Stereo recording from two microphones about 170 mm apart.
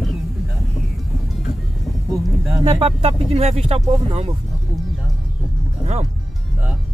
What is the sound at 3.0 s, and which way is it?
Speech, 35° right (ahead or behind).